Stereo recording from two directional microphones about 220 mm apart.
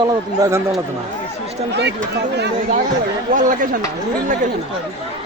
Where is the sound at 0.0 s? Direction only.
15° right (ahead or behind).